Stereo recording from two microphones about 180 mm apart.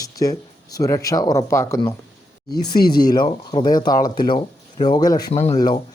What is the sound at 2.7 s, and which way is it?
Speech, 60° left (ahead or behind).